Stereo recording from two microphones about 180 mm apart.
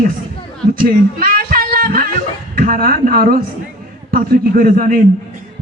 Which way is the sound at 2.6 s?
55° right (ahead or behind).